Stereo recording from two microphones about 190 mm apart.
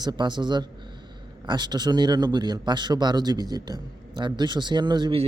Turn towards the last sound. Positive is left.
turn(degrees=-25)  # may be behind; listen again after turning